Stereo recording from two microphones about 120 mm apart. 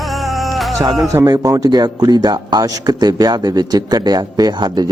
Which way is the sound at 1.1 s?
30° right (ahead or behind).